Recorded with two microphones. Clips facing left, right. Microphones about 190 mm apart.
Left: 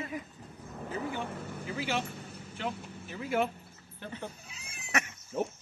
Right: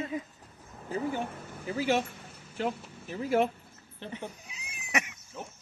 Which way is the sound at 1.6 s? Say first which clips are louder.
Right 6 dB; 40° right (ahead or behind).